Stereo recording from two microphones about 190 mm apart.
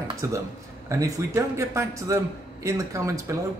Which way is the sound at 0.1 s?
20° right (ahead or behind).